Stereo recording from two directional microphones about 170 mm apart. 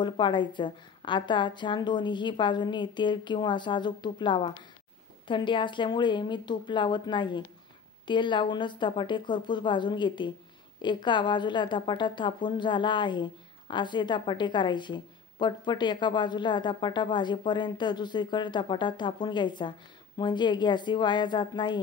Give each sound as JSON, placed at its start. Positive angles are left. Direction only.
{"t": 0.0, "sound": "a woman's voice", "side_deg": 30}